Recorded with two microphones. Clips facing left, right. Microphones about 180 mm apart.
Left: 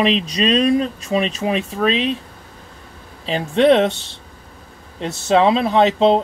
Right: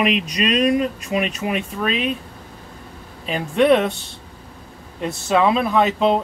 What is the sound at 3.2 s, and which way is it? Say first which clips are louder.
Speech: left 2 dB; 30° left (ahead or behind).